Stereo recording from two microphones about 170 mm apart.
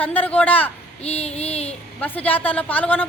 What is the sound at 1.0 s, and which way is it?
Child singing, 35° left (ahead or behind).